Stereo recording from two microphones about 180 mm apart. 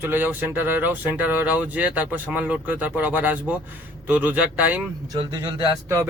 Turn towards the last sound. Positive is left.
turn(degrees=-20)  # may be behind; listen again after turning